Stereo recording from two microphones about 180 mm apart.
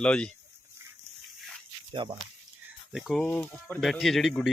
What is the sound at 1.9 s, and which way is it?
Speech, 30° right (ahead or behind).